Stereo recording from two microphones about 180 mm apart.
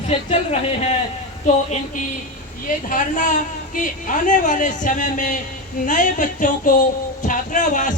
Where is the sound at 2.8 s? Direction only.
45° left (ahead or behind).